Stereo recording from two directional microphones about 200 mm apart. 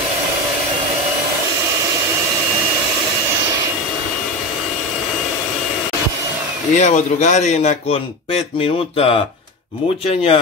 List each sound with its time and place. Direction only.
6.7 s speech: 35° left (ahead or behind)